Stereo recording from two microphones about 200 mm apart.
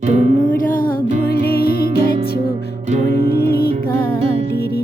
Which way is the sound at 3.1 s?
50° left (ahead or behind).